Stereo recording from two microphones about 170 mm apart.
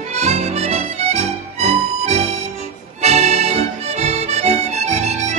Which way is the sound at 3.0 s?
40° right (ahead or behind).